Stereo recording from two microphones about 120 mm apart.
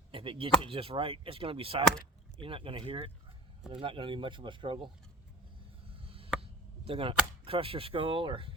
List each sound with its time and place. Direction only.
0.1 s chop: 45° right (ahead or behind)
0.6 s speech: 50° right (ahead or behind)
6.0 s a sound: 50° right (ahead or behind)
6.8 s speech: 50° right (ahead or behind)